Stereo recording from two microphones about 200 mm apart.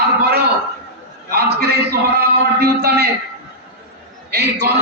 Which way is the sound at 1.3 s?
55° right (ahead or behind).